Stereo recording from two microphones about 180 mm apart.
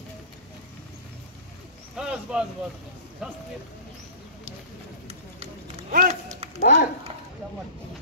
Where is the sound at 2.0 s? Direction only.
5° right (ahead or behind).